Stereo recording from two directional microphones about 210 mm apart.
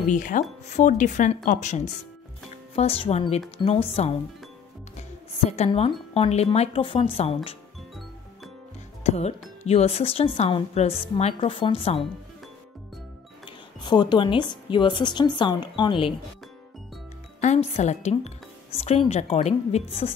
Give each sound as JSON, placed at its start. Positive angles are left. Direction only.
{"t": 0.1, "sound": "speech", "side_deg": 40}
{"t": 9.0, "sound": "speech", "side_deg": 30}
{"t": 13.5, "sound": "speech", "side_deg": 20}
{"t": 17.4, "sound": "speech", "side_deg": 30}